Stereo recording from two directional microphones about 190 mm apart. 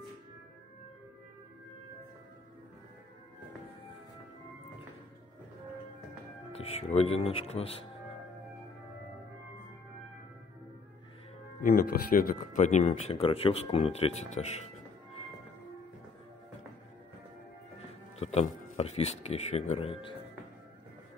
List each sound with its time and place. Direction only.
6.5 s speech: 30° left (ahead or behind)
11.6 s speech: 50° left (ahead or behind)
18.2 s speech: 35° left (ahead or behind)